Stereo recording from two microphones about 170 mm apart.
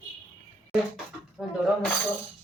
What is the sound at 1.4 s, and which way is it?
Speech, 5° right (ahead or behind).